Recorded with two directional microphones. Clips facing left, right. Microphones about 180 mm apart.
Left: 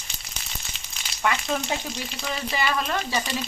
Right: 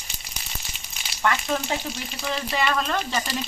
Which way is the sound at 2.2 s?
Centre (ahead or behind).